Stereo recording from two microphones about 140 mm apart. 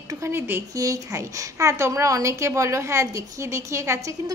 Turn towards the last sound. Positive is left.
turn(degrees=-20)  # may be behind; listen again after turning